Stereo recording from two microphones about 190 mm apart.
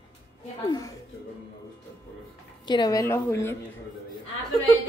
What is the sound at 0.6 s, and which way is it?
Speech, 20° left (ahead or behind).